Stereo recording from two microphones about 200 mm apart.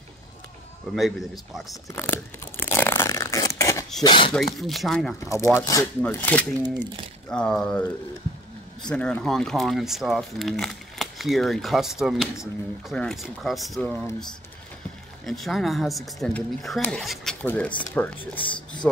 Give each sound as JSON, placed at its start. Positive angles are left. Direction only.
{"t": 0.9, "sound": "speech", "side_deg": 0}
{"t": 1.9, "sound": "a sound", "side_deg": 10}
{"t": 4.0, "sound": "speech", "side_deg": 25}
{"t": 4.3, "sound": "speech", "side_deg": 0}
{"t": 5.2, "sound": "speech", "side_deg": 15}
{"t": 15.2, "sound": "speech", "side_deg": 0}
{"t": 18.5, "sound": "speech", "side_deg": 20}